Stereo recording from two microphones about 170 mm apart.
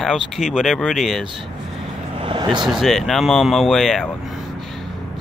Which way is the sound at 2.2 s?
30° right (ahead or behind).